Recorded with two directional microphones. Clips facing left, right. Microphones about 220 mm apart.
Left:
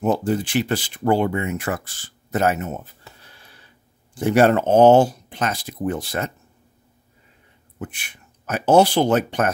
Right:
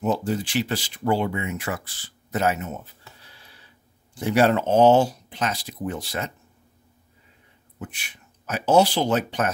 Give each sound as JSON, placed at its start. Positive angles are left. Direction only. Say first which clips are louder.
{"t": 0.0, "sound": "speech", "louder": "left 4 dB", "side_deg": 55}
{"t": 7.8, "sound": "speech", "louder": "left 4 dB", "side_deg": 55}